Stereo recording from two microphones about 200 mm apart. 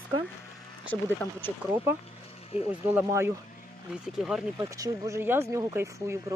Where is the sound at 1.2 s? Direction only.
10° left (ahead or behind).